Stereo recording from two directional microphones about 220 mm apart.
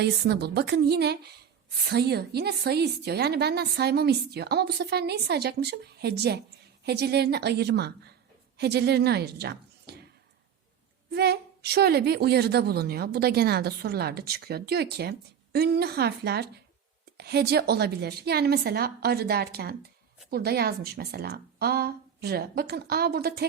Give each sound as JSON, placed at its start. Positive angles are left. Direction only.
{"t": 0.0, "sound": "a woman's voice", "side_deg": -45}
{"t": 11.1, "sound": "a woman's voice", "side_deg": -45}